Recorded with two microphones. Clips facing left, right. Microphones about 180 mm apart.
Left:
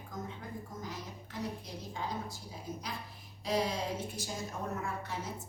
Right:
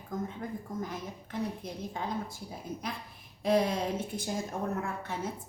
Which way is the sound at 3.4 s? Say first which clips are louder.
Right 6 dB; 55° right (ahead or behind).